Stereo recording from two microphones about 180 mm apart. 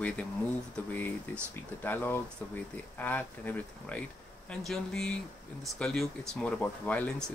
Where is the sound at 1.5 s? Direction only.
10° left (ahead or behind).